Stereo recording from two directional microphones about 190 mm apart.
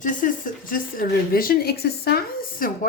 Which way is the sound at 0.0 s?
45° left (ahead or behind).